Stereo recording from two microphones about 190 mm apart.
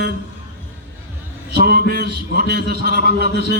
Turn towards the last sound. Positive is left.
turn(degrees=-60)  # may be behind; listen again after turning